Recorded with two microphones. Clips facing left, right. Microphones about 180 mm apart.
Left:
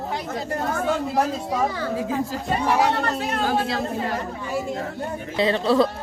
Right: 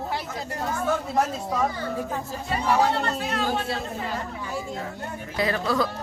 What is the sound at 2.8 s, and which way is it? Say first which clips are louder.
Speech: left 2 dB; 65° left (ahead or behind).